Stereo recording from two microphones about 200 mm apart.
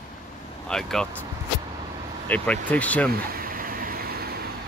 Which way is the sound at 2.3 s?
5° left (ahead or behind).